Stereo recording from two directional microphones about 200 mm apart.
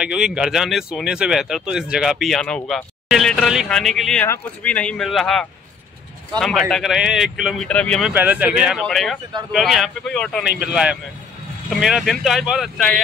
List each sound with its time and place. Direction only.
0.0 s speech: 5° right (ahead or behind)
8.1 s speech: 10° right (ahead or behind)